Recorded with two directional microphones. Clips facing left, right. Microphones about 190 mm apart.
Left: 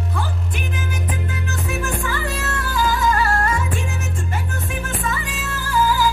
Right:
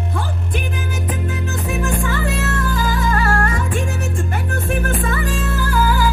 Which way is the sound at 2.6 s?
55° right (ahead or behind).